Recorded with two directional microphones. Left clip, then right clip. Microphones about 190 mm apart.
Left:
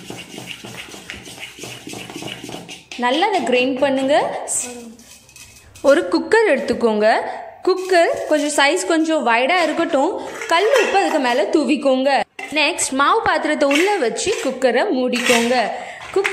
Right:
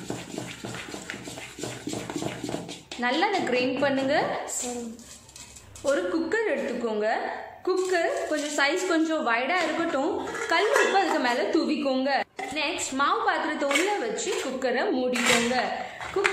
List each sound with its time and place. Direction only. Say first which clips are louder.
3.0 s a woman's voice: left 8 dB; 35° left (ahead or behind)
5.9 s a woman's voice: left 11 dB; 50° left (ahead or behind)